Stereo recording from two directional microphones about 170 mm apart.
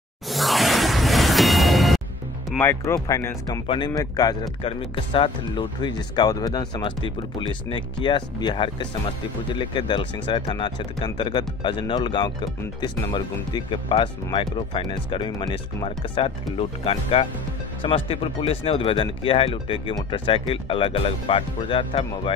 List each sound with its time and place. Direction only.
0.3 s music: centre (ahead or behind)
2.5 s speech: 10° left (ahead or behind)
3.6 s speech: 30° left (ahead or behind)